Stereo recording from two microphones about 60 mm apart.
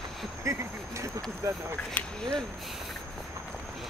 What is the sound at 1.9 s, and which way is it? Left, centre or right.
Speech, centre.